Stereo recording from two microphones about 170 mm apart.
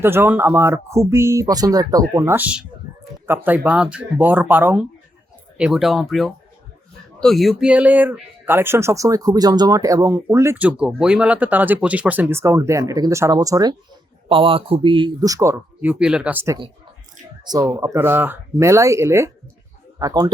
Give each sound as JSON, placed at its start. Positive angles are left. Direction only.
{"t": 0.0, "sound": "speech", "side_deg": -10}
{"t": 14.3, "sound": "speech", "side_deg": -30}